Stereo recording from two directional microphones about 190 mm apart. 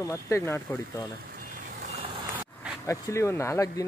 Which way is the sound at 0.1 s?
15° left (ahead or behind).